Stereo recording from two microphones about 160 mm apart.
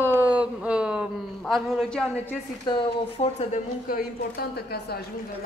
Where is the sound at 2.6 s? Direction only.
35° left (ahead or behind).